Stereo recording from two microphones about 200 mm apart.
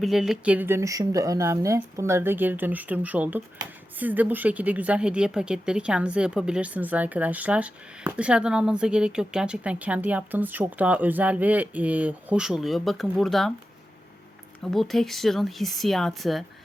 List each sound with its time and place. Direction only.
0.0 s speech: centre (ahead or behind)
14.6 s speech: centre (ahead or behind)